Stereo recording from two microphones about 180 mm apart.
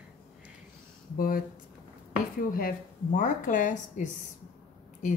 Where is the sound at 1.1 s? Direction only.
55° left (ahead or behind).